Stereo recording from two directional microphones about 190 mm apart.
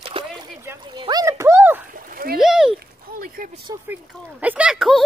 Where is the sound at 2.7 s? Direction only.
50° right (ahead or behind).